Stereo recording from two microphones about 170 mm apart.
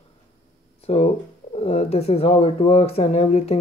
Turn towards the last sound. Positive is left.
turn(degrees=35)  # may be behind; listen again after turning